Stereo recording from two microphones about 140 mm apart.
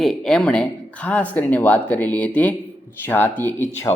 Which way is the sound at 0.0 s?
5° left (ahead or behind).